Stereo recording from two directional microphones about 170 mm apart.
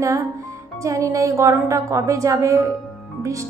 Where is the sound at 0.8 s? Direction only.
20° right (ahead or behind).